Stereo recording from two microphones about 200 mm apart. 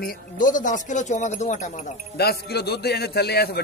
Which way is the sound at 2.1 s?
55° left (ahead or behind).